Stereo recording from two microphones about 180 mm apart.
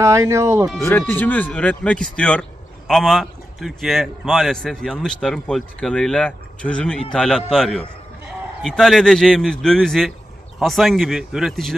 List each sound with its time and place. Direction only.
0.0 s speech: 15° right (ahead or behind)
0.7 s a man's voice: 10° left (ahead or behind)